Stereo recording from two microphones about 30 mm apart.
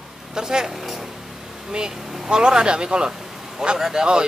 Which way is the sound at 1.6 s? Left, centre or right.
Right.